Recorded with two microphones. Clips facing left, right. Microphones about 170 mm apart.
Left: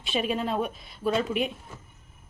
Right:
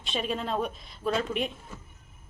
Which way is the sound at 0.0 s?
5° left (ahead or behind).